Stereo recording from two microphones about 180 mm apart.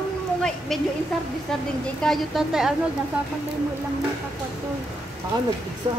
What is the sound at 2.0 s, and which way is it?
Speech, centre (ahead or behind).